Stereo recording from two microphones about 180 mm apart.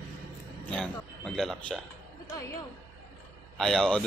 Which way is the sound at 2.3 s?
15° left (ahead or behind).